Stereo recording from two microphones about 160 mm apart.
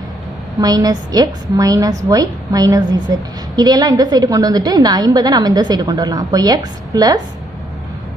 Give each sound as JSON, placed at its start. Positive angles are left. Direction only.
{"t": 0.6, "sound": "a woman's voice", "side_deg": -25}